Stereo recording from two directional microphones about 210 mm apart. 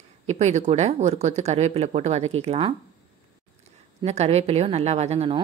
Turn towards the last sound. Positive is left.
turn(degrees=-30)  # may be behind; listen again after turning